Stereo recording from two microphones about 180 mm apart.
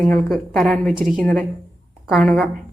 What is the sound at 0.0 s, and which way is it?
A woman's voice, 5° left (ahead or behind).